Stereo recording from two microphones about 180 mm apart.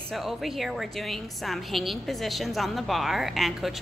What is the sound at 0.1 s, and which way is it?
A woman's voice, centre (ahead or behind).